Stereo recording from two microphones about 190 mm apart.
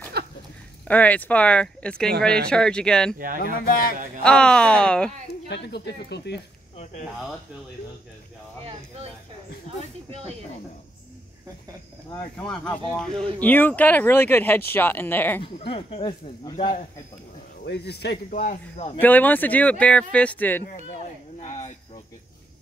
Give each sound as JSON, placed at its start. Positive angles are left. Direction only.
{"t": 0.2, "sound": "a sound", "side_deg": -60}
{"t": 0.8, "sound": "speech", "side_deg": 10}
{"t": 3.2, "sound": "speech", "side_deg": -45}
{"t": 3.6, "sound": "speech", "side_deg": 50}
{"t": 4.2, "sound": "speech", "side_deg": 5}
{"t": 5.3, "sound": "speech", "side_deg": 60}
{"t": 6.8, "sound": "speech", "side_deg": 35}
{"t": 10.0, "sound": "speech", "side_deg": -30}
{"t": 12.4, "sound": "speech", "side_deg": 5}
{"t": 15.4, "sound": "speech", "side_deg": 30}
{"t": 17.6, "sound": "speech", "side_deg": 60}
{"t": 18.3, "sound": "speech", "side_deg": 45}
{"t": 18.9, "sound": "speech", "side_deg": 10}
{"t": 20.6, "sound": "a sound", "side_deg": 40}